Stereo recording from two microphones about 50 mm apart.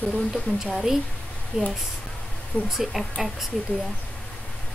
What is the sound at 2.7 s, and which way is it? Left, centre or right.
Speech, centre.